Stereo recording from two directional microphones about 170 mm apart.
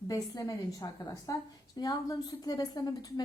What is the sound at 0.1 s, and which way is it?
Speech, 20° left (ahead or behind).